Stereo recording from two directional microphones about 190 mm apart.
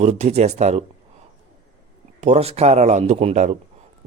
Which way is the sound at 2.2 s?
35° right (ahead or behind).